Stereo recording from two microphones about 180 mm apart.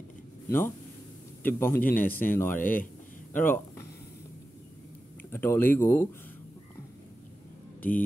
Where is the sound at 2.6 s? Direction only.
50° left (ahead or behind).